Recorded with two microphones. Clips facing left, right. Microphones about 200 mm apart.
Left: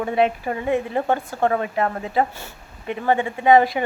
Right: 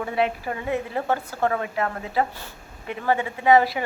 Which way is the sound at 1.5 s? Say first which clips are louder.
Left 4 dB; 30° left (ahead or behind).